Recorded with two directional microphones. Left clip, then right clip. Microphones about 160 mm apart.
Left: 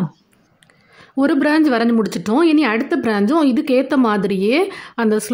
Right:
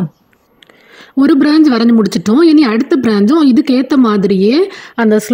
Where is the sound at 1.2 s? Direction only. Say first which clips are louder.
Right 6 dB; 35° right (ahead or behind).